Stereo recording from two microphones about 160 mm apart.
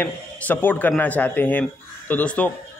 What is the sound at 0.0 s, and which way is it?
A man's voice, 10° left (ahead or behind).